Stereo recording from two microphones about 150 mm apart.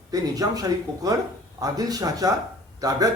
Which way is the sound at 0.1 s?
25° right (ahead or behind).